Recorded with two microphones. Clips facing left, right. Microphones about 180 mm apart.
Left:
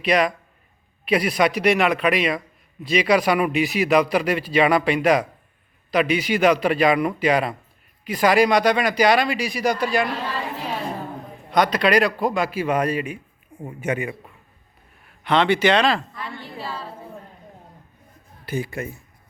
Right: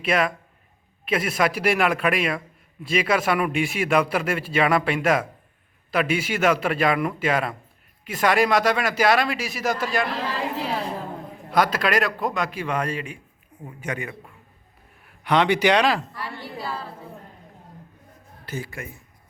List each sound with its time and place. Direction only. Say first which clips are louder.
0.0 s a man's voice: left 3 dB; centre (ahead or behind)
11.5 s a man's voice: left 3 dB; 5° right (ahead or behind)
13.6 s speech: left 6 dB; 25° left (ahead or behind)
15.2 s speech: left 1 dB; 10° right (ahead or behind)
18.4 s speech: left 6 dB; 15° left (ahead or behind)